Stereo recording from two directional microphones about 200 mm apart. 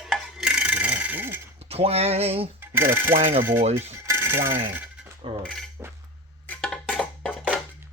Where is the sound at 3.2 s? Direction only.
30° right (ahead or behind).